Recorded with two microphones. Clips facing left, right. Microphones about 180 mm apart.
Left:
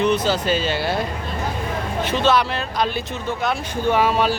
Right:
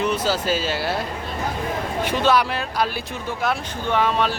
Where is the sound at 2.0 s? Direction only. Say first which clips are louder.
Left 1 dB; 10° right (ahead or behind).